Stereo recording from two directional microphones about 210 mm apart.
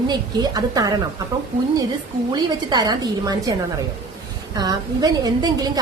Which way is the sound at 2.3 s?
20° right (ahead or behind).